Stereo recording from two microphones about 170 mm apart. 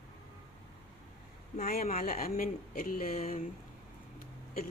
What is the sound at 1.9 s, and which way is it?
Speech, 55° left (ahead or behind).